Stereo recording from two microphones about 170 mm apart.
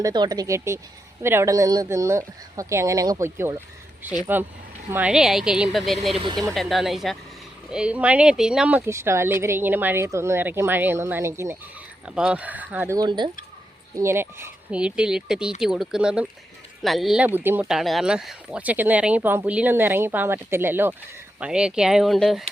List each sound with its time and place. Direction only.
0.0 s a woman's voice: 25° right (ahead or behind); by 6.1 s centre (ahead or behind)
6.1 s speech: 30° right (ahead or behind)
6.5 s a woman's voice: centre (ahead or behind)
13.0 s speech: 25° right (ahead or behind)
13.9 s a woman's voice: 15° right (ahead or behind); by 22.4 s centre (ahead or behind)